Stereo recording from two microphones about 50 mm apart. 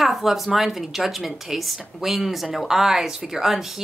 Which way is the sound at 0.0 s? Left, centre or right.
Centre.